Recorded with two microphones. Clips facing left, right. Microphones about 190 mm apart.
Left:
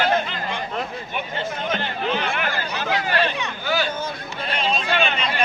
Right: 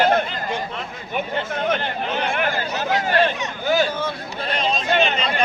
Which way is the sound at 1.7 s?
45° right (ahead or behind).